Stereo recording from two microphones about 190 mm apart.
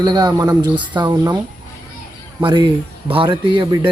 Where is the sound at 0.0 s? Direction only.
20° right (ahead or behind).